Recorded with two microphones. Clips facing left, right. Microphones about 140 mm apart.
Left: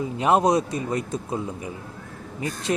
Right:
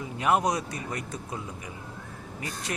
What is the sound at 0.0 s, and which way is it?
Speech, 25° left (ahead or behind).